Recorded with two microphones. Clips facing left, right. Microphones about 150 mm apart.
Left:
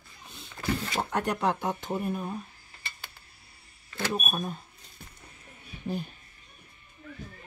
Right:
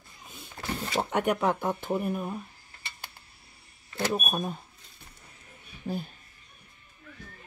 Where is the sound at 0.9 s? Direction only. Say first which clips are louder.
Right 8 dB; 5° right (ahead or behind).